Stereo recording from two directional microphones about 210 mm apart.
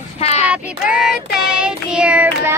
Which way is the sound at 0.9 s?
Centre (ahead or behind).